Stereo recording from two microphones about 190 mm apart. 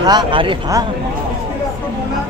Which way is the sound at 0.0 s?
20° right (ahead or behind).